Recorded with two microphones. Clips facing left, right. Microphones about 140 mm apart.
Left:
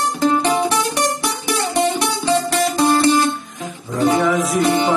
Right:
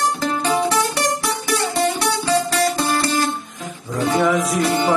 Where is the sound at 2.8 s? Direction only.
20° left (ahead or behind).